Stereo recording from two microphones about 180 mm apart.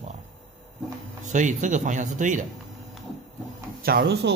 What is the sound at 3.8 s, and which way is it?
Speech, 55° right (ahead or behind).